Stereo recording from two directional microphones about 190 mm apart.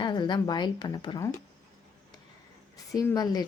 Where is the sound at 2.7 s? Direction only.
20° left (ahead or behind).